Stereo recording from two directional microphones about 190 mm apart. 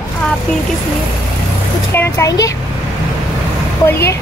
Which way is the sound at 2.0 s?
15° left (ahead or behind).